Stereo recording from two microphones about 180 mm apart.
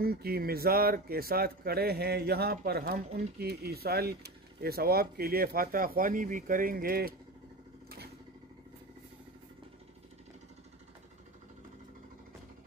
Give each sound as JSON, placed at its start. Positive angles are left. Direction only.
{"t": 0.0, "sound": "speech", "side_deg": -60}